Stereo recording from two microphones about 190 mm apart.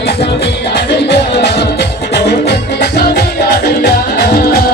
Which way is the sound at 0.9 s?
65° left (ahead or behind).